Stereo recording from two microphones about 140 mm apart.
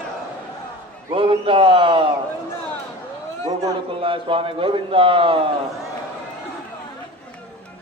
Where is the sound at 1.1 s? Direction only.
40° right (ahead or behind).